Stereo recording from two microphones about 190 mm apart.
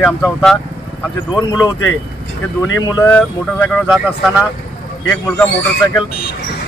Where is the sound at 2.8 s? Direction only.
20° left (ahead or behind).